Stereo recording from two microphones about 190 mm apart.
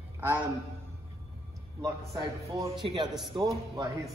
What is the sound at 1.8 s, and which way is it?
A man's voice, 20° right (ahead or behind).